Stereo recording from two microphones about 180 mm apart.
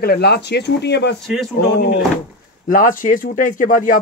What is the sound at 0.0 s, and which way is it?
Speech, 60° left (ahead or behind).